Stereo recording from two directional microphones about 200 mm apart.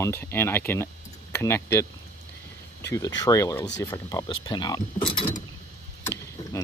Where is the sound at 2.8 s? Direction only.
15° left (ahead or behind).